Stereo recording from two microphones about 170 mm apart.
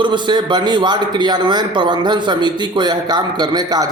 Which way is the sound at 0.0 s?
25° right (ahead or behind).